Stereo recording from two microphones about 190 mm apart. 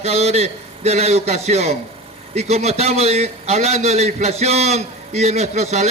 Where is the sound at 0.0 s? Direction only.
35° right (ahead or behind).